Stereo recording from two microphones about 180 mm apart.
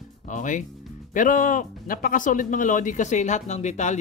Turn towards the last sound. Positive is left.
turn(degrees=40)  # may be behind; listen again after turning